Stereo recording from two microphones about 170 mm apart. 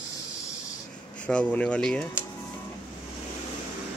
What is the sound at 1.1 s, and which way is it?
Speech, 5° left (ahead or behind).